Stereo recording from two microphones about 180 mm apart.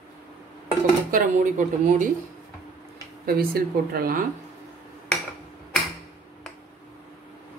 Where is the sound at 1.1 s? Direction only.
45° right (ahead or behind).